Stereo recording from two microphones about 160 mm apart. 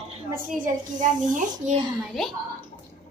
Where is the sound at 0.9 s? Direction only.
50° right (ahead or behind).